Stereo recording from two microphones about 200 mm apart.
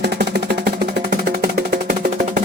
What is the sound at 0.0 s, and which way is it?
Music, 55° right (ahead or behind).